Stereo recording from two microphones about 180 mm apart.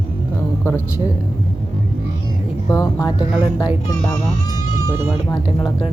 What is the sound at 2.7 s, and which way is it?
Speech, 20° left (ahead or behind).